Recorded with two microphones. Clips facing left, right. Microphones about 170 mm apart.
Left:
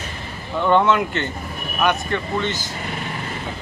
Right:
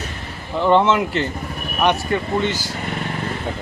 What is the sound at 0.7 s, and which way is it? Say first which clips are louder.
Speech: right 1 dB; 25° right (ahead or behind).